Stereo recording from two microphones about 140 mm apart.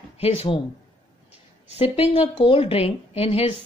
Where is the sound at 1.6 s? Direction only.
45° left (ahead or behind).